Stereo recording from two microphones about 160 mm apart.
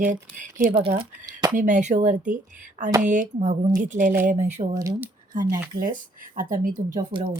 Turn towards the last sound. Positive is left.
turn(degrees=-30)  # may be behind; listen again after turning